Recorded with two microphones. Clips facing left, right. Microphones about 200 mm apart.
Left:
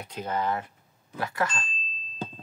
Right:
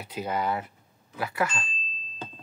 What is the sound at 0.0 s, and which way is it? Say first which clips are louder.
Speech: even; 5° right (ahead or behind).